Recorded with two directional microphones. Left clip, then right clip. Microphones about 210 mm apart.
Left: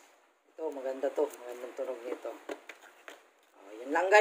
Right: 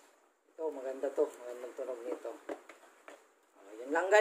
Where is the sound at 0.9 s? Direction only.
25° left (ahead or behind).